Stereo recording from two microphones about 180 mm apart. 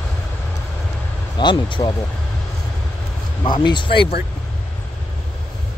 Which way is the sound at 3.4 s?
25° left (ahead or behind).